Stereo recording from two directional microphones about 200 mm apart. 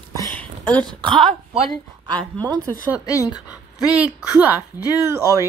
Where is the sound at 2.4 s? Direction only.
20° right (ahead or behind).